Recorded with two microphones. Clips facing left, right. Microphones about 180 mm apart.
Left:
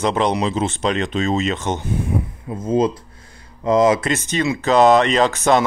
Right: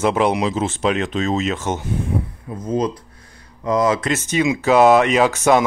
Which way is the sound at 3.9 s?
5° right (ahead or behind).